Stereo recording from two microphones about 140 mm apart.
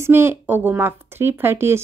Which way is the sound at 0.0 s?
15° right (ahead or behind).